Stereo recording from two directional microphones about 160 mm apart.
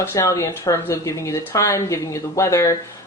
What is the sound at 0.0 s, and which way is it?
Speech, 15° left (ahead or behind).